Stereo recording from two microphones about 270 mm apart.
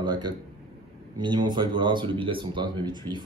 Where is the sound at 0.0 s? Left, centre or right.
Centre.